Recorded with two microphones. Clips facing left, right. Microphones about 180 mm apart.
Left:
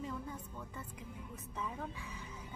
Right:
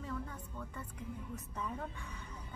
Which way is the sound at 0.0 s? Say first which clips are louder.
Even; 15° left (ahead or behind).